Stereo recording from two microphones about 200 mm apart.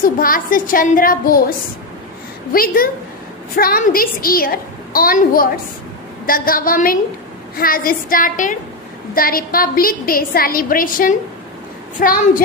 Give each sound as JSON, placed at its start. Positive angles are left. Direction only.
{"t": 0.0, "sound": "a woman's voice", "side_deg": 45}
{"t": 2.5, "sound": "a woman's voice", "side_deg": 45}